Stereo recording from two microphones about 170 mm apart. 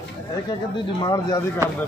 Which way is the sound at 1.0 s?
20° left (ahead or behind).